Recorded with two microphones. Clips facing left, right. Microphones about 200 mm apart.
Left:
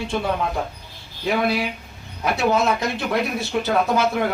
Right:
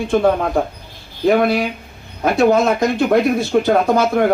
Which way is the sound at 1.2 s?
50° right (ahead or behind).